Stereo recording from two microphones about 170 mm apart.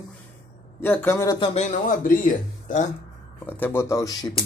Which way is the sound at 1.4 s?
40° left (ahead or behind).